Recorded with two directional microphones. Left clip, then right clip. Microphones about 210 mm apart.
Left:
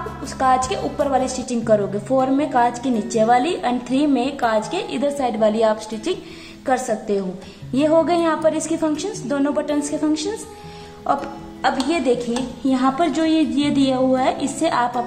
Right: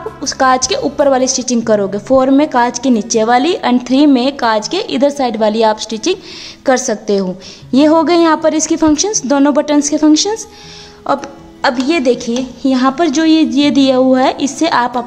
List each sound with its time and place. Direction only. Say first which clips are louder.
0.3 s a woman's voice: right 6 dB; 45° right (ahead or behind)